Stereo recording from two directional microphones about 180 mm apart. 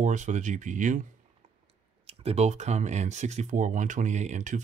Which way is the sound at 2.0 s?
35° right (ahead or behind).